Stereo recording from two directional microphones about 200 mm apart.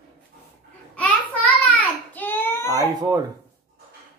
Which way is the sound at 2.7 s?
20° right (ahead or behind).